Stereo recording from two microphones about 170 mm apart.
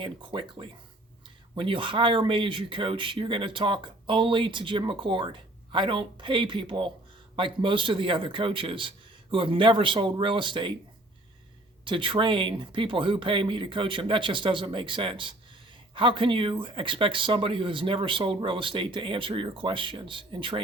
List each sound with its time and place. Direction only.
0.0 s speech: 30° right (ahead or behind)
11.9 s speech: 30° right (ahead or behind)